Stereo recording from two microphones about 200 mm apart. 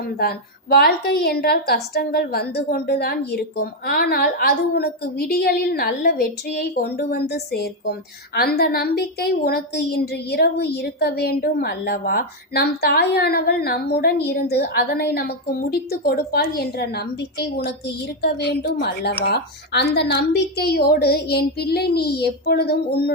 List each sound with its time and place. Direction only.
0.2 s a woman's voice: 50° left (ahead or behind)